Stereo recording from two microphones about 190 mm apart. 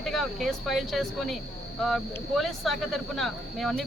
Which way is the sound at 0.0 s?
Centre (ahead or behind).